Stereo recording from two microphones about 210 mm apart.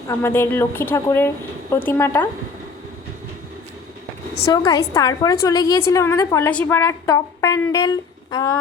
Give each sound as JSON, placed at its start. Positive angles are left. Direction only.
{"t": 0.1, "sound": "a woman's voice", "side_deg": 10}
{"t": 4.5, "sound": "a woman's voice", "side_deg": 15}